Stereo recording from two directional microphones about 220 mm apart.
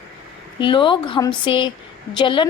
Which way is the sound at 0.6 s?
20° left (ahead or behind).